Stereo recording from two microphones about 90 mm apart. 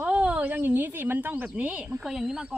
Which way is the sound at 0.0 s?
15° right (ahead or behind).